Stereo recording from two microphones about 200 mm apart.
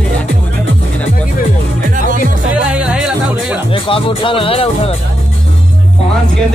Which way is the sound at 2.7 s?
5° right (ahead or behind).